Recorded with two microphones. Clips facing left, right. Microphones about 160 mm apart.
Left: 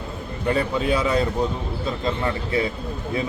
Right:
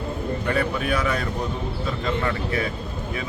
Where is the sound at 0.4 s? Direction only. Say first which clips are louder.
Left 4 dB; 25° left (ahead or behind).